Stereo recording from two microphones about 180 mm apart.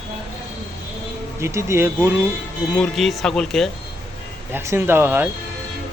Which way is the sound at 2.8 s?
Centre (ahead or behind).